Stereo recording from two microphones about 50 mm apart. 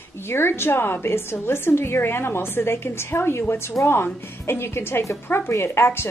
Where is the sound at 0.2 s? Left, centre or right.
Left.